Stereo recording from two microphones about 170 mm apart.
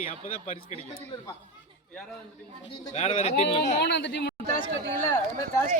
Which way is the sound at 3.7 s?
85° left.